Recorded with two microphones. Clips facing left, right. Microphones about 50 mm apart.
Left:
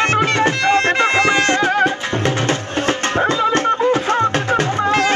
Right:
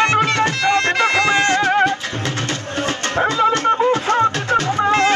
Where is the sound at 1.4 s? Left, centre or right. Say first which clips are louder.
Even; centre.